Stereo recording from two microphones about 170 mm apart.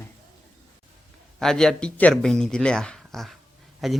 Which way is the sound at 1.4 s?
5° left (ahead or behind).